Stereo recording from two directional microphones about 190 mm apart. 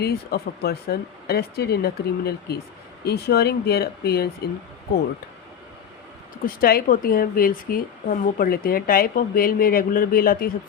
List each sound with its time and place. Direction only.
0.0 s speech: 55° left (ahead or behind)
6.4 s a woman's voice: 50° left (ahead or behind)